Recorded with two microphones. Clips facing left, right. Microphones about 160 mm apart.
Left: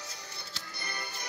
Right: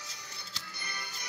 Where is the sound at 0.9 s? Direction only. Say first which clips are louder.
Left 5 dB; 50° left (ahead or behind).